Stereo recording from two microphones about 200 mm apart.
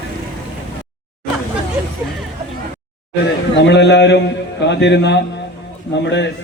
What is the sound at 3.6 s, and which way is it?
A man's voice, 60° left (ahead or behind).